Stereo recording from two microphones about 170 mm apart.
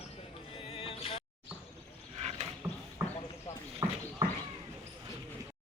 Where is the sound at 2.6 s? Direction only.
15° right (ahead or behind).